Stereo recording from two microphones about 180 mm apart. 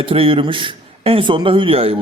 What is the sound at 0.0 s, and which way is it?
A man's voice, 30° right (ahead or behind).